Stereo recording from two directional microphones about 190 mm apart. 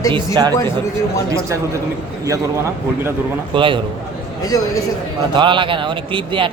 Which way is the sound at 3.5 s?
25° right (ahead or behind).